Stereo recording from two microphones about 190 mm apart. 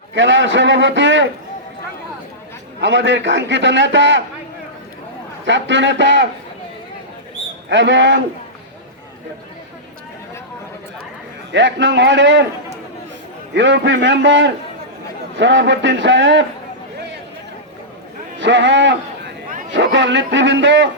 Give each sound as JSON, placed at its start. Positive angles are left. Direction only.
{"t": 0.1, "sound": "a man's voice", "side_deg": -75}
{"t": 2.8, "sound": "a man's voice", "side_deg": -70}
{"t": 5.5, "sound": "a man's voice", "side_deg": -70}
{"t": 7.7, "sound": "a man's voice", "side_deg": -70}
{"t": 11.5, "sound": "a man's voice", "side_deg": -70}
{"t": 13.5, "sound": "a man's voice", "side_deg": -65}
{"t": 18.3, "sound": "a man's voice", "side_deg": -70}